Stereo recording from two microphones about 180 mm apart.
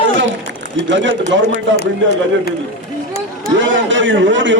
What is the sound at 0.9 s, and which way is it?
Speech, 90° right.